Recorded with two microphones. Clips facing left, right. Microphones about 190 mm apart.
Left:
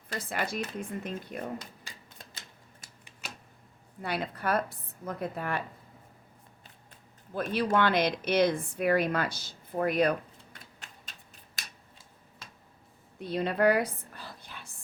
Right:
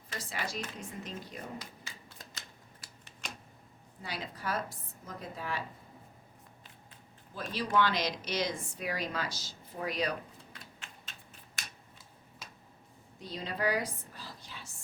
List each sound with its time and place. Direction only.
0.2 s a woman's voice: 55° left (ahead or behind)
3.2 s a sound: 5° left (ahead or behind)
4.0 s a woman's voice: 60° left (ahead or behind)
7.3 s a woman's voice: 60° left (ahead or behind)
13.1 s whispering: 60° left (ahead or behind)